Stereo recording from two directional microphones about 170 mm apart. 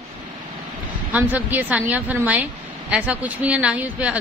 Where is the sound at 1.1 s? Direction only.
10° right (ahead or behind).